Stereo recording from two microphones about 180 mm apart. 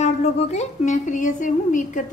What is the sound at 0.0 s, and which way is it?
A woman's voice, 40° left (ahead or behind).